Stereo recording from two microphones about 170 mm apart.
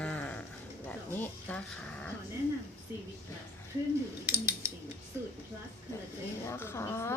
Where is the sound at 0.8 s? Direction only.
10° left (ahead or behind).